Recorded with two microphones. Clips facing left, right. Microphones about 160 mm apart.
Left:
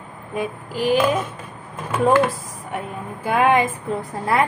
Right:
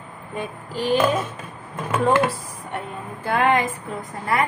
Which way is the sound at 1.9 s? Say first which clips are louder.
Left 2 dB; 10° left (ahead or behind).